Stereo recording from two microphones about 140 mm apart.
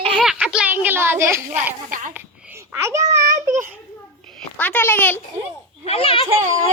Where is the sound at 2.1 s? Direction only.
15° right (ahead or behind).